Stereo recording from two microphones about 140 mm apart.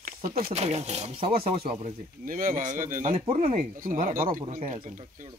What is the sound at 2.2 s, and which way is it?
Speech, 80° right.